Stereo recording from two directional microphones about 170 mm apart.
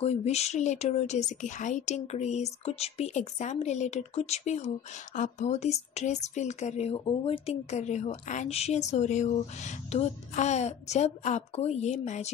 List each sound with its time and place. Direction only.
0.0 s speech: 40° left (ahead or behind)